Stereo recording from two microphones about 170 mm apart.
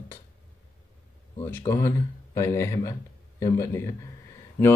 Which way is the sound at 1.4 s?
15° left (ahead or behind).